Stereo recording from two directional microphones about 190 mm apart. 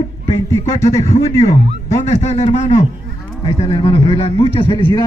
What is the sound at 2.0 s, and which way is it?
A man's voice, 35° left (ahead or behind).